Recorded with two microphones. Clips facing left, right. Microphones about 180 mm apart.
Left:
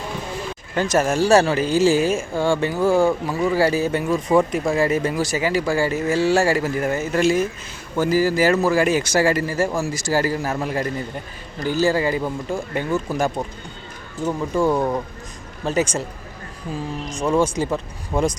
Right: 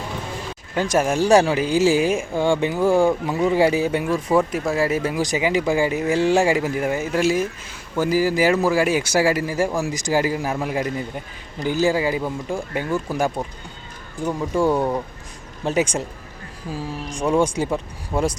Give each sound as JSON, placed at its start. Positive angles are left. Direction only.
{"t": 0.8, "sound": "speech", "side_deg": -10}
{"t": 14.5, "sound": "speech", "side_deg": -10}